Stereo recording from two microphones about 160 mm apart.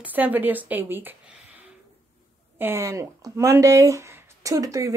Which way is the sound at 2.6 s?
15° right (ahead or behind).